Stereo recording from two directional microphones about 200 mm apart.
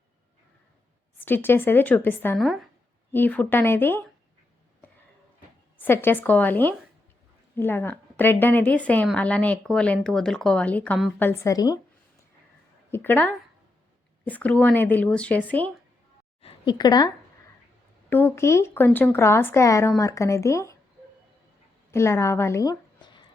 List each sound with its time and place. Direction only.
1.2 s speech: 10° left (ahead or behind)
2.4 s speech: centre (ahead or behind)
5.8 s speech: 10° left (ahead or behind)
12.9 s speech: 10° left (ahead or behind)
16.4 s a woman's voice: 25° left (ahead or behind)
18.1 s speech: 10° left (ahead or behind)
21.9 s a woman's voice: 15° left (ahead or behind)